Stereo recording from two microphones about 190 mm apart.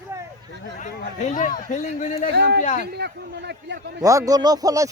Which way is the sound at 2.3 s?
60° right (ahead or behind).